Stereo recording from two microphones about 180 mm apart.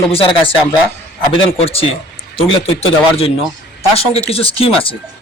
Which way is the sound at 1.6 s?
35° left (ahead or behind).